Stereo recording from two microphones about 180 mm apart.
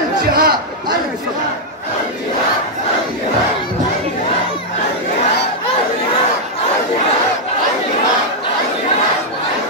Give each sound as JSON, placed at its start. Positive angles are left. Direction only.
{"t": 0.3, "sound": "a man's voice", "side_deg": -55}